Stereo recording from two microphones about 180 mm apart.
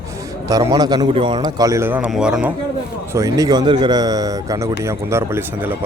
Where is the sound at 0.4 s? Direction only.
20° right (ahead or behind).